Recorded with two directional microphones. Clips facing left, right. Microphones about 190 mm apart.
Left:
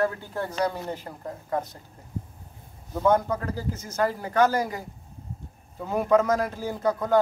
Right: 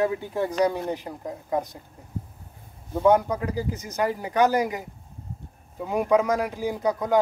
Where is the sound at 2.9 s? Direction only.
15° right (ahead or behind).